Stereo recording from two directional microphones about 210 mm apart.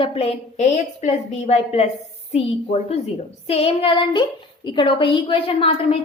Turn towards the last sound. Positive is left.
turn(degrees=25)  # may be behind; listen again after turning